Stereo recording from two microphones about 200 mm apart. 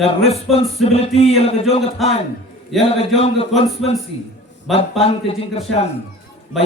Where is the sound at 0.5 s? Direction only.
30° left (ahead or behind).